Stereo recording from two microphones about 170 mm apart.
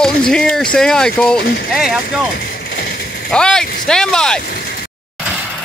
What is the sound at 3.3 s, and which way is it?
Speech, 5° left (ahead or behind).